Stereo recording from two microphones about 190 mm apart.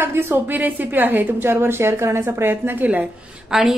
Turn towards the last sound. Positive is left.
turn(degrees=0)  # may be behind; listen again after turning